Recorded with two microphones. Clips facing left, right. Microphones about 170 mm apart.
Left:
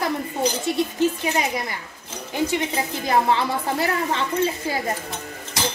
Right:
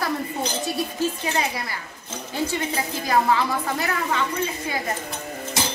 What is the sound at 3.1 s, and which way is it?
A woman's voice, 25° left (ahead or behind).